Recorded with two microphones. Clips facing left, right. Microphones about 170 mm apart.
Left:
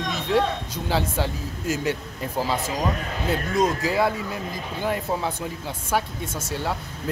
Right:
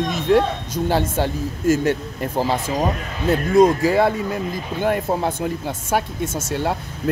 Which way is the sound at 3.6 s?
50° right (ahead or behind).